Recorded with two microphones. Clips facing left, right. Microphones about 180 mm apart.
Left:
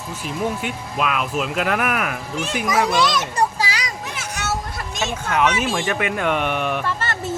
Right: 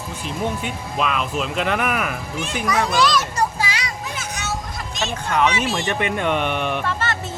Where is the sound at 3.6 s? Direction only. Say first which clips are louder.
Left 1 dB; 35° left (ahead or behind).